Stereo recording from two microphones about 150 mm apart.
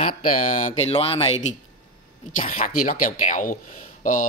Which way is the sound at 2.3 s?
60° left (ahead or behind).